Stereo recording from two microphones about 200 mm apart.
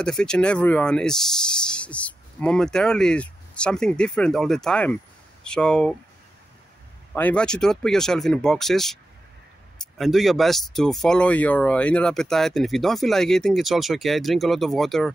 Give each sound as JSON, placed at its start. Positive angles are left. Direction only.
{"t": 0.0, "sound": "speech", "side_deg": 5}
{"t": 7.2, "sound": "speech", "side_deg": 5}